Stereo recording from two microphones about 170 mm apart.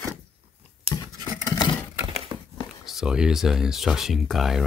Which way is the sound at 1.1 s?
20° right (ahead or behind).